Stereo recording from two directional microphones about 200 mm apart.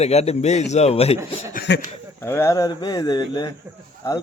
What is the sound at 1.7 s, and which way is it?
Speech, 60° left (ahead or behind).